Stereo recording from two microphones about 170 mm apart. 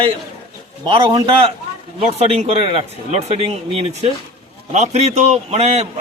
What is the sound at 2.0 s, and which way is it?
A man's voice, 40° right (ahead or behind).